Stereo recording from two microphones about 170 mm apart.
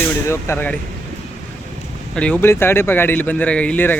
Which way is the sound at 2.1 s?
5° left (ahead or behind).